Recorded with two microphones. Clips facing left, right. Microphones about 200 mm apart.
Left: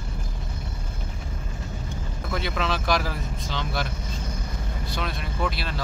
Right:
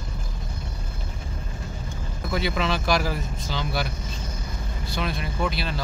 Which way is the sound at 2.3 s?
5° right (ahead or behind).